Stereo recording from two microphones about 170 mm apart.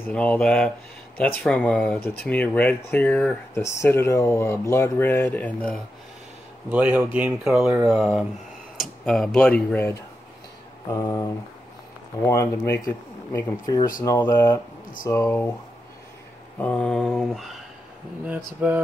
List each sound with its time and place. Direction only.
0.1 s mantra: 5° left (ahead or behind)
1.4 s speech: 5° left (ahead or behind)
6.7 s speech: 10° right (ahead or behind)
7.8 s mantra: centre (ahead or behind)
8.7 s speech: centre (ahead or behind)
10.9 s speech: 20° left (ahead or behind)
12.3 s speech: 20° left (ahead or behind)
16.5 s mantra: 10° left (ahead or behind)
18.2 s speech: 10° right (ahead or behind)